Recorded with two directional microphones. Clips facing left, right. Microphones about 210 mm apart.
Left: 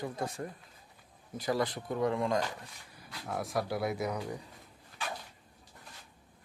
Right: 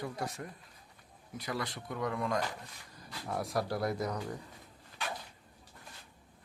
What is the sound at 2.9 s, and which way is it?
Speech, centre (ahead or behind).